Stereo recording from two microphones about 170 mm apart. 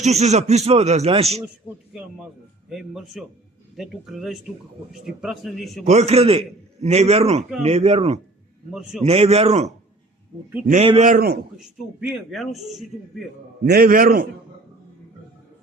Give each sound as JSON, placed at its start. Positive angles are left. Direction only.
{"t": 0.0, "sound": "speech", "side_deg": -40}
{"t": 2.6, "sound": "a man's voice", "side_deg": 0}
{"t": 5.8, "sound": "speech", "side_deg": -40}
{"t": 8.7, "sound": "a man's voice", "side_deg": -5}
{"t": 9.0, "sound": "speech", "side_deg": -35}
{"t": 10.7, "sound": "speech", "side_deg": -35}
{"t": 11.0, "sound": "a man's voice", "side_deg": -60}
{"t": 11.5, "sound": "a man's voice", "side_deg": -5}
{"t": 13.7, "sound": "a man's voice", "side_deg": -60}